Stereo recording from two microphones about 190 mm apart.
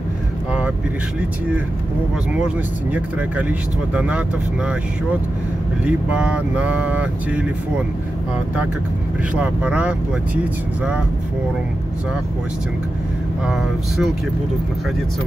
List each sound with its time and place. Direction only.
2.3 s speech: 5° right (ahead or behind)
5.9 s speech: 5° right (ahead or behind)
9.3 s speech: 5° right (ahead or behind)
13.5 s speech: centre (ahead or behind)